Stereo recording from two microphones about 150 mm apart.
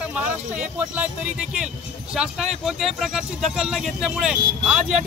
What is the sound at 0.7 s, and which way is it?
Speech, 10° right (ahead or behind).